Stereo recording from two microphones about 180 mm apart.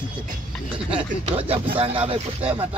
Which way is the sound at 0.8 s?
30° right (ahead or behind).